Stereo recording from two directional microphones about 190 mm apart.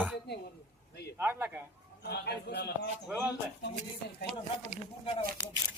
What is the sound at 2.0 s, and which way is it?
Speech, 60° left (ahead or behind).